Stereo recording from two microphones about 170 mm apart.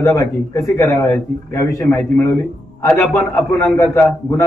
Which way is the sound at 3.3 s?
15° left (ahead or behind).